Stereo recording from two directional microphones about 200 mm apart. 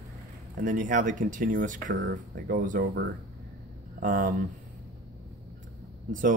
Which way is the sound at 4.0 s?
45° right (ahead or behind).